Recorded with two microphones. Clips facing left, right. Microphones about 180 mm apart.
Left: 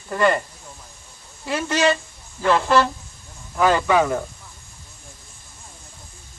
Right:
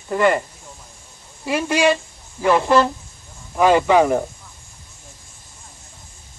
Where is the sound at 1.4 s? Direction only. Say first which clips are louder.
Right 2 dB; 15° right (ahead or behind).